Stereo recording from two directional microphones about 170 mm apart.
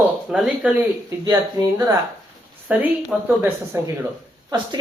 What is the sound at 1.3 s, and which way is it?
Speech, 15° right (ahead or behind).